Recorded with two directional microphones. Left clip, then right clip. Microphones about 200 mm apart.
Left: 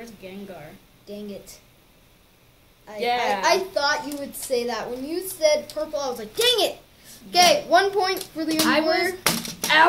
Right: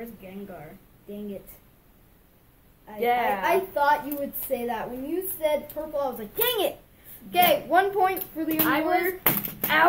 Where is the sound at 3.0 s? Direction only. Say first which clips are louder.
Left 1 dB; 5° right (ahead or behind).